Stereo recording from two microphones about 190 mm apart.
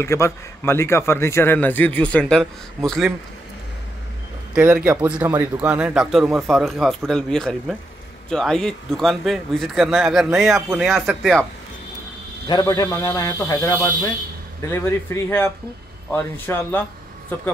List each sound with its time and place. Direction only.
0.0 s a man's voice: 15° left (ahead or behind)
4.6 s speech: 5° right (ahead or behind)
12.4 s a man's voice: 20° left (ahead or behind)